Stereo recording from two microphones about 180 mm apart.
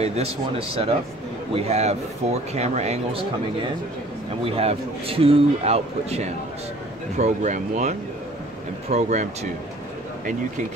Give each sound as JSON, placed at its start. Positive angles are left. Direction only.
{"t": 0.0, "sound": "speech", "side_deg": -35}
{"t": 4.5, "sound": "speech", "side_deg": -30}
{"t": 8.9, "sound": "speech", "side_deg": -40}